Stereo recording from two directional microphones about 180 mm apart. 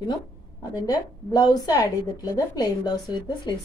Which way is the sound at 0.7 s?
20° left (ahead or behind).